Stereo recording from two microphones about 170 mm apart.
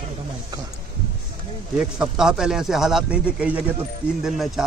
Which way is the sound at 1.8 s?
5° right (ahead or behind).